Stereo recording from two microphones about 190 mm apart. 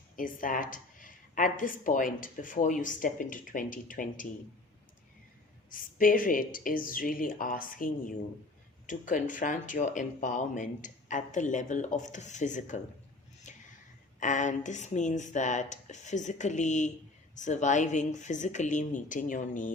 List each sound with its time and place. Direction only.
0.2 s speech: 45° left (ahead or behind)
6.0 s speech: 45° left (ahead or behind)
13.5 s a sound: 40° left (ahead or behind)
14.2 s speech: 40° left (ahead or behind)